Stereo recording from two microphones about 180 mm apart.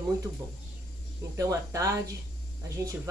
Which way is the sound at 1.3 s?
20° right (ahead or behind).